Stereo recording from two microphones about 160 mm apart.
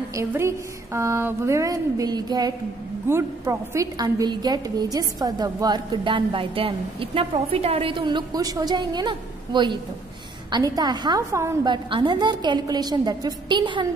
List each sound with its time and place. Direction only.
0.1 s a woman's voice: 15° right (ahead or behind)
11.7 s a woman's voice: 30° right (ahead or behind)